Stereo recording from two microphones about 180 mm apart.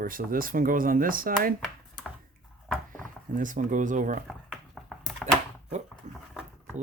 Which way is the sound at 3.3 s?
45° right (ahead or behind).